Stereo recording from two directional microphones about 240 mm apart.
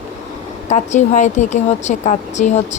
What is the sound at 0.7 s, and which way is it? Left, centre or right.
Speech, left.